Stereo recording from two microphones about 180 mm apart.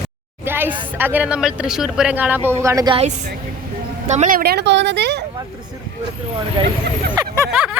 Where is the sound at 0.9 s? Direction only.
10° right (ahead or behind).